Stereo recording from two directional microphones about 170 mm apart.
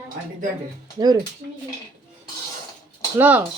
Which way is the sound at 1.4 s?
85° right.